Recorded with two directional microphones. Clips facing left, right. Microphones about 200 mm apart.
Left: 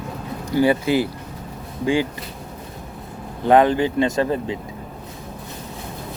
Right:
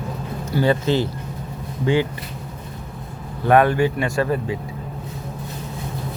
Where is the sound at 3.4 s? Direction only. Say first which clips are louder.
Left 1 dB; 20° left (ahead or behind).